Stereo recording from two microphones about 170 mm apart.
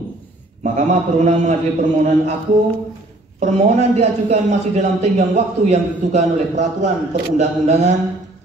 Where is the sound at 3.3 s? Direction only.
40° right (ahead or behind).